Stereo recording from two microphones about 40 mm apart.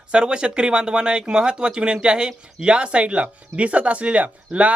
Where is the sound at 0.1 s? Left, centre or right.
Right.